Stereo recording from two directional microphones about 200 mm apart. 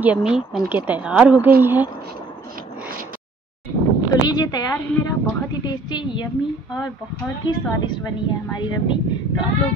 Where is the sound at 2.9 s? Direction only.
45° right (ahead or behind).